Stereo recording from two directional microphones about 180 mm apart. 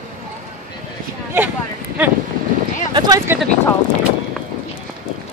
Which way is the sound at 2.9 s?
20° right (ahead or behind).